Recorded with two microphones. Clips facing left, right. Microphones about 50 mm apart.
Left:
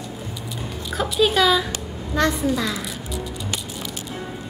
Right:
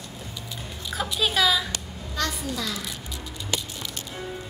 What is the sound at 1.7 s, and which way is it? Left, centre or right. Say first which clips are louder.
A child's voice: left 6 dB; left.